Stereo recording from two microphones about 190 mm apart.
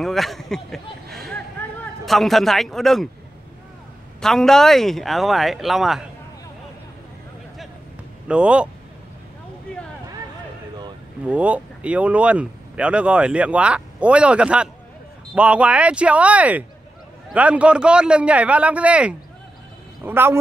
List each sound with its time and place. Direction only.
0.0 s speech: centre (ahead or behind)
4.2 s speech: centre (ahead or behind)
8.3 s speech: 5° right (ahead or behind)
11.2 s speech: 5° right (ahead or behind)